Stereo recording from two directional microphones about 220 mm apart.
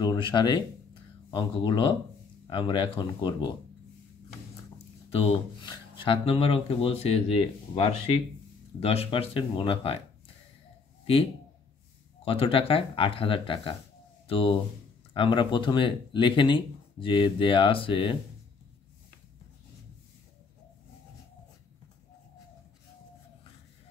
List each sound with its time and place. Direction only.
0.0 s speech: 20° left (ahead or behind)
5.1 s speech: 25° left (ahead or behind)
12.3 s speech: 25° left (ahead or behind)